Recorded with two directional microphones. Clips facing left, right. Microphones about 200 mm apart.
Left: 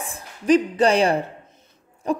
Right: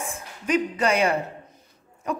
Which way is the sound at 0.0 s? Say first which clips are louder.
Left 4 dB; 35° left (ahead or behind).